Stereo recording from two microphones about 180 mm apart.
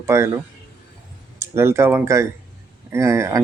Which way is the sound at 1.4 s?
15° right (ahead or behind).